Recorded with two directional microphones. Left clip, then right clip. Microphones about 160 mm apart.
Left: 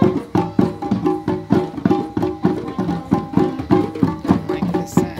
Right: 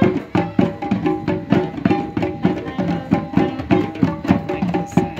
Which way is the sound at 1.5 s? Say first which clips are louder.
Left 1 dB; 10° right (ahead or behind).